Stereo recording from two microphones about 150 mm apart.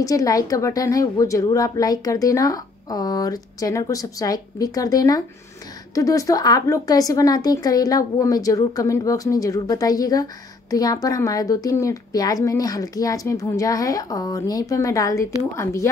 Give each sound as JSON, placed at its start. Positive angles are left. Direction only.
{"t": 0.0, "sound": "a woman's voice", "side_deg": 25}